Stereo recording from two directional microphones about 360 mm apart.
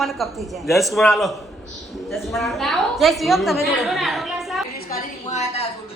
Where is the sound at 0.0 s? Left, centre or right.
Centre.